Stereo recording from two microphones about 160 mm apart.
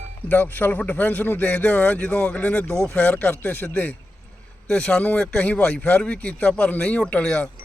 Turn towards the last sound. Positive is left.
turn(degrees=5)  # may be behind; listen again after turning